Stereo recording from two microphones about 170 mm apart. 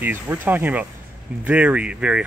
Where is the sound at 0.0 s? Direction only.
10° right (ahead or behind).